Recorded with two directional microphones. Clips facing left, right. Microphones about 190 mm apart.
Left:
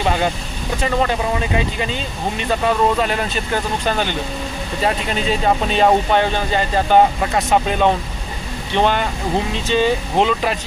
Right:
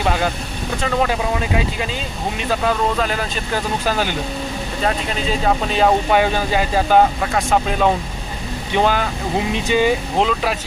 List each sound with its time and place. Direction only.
0.0 s speech: centre (ahead or behind)
9.5 s speech: 15° right (ahead or behind)
10.2 s speech: centre (ahead or behind)